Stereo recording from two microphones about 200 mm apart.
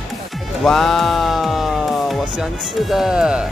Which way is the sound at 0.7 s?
Centre (ahead or behind).